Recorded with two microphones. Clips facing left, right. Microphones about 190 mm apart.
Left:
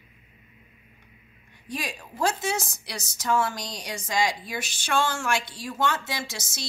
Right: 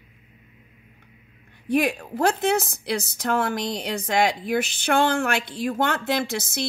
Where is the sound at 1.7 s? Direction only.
60° right (ahead or behind).